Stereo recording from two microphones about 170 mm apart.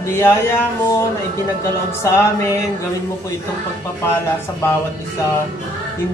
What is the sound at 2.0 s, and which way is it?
Speech, 15° left (ahead or behind).